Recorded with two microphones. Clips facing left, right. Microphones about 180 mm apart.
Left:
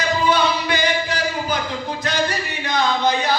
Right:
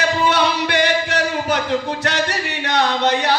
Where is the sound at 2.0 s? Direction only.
70° right (ahead or behind).